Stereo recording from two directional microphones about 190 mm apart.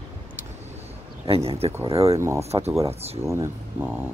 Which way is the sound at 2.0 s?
15° right (ahead or behind).